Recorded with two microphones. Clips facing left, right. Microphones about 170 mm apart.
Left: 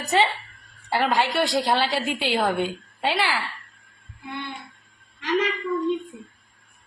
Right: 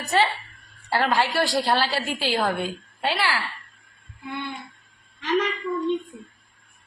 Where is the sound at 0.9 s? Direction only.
20° left (ahead or behind).